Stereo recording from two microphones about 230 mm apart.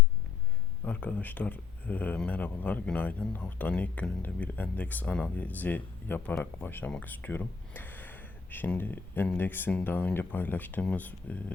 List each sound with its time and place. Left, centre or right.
0.9 s speech: centre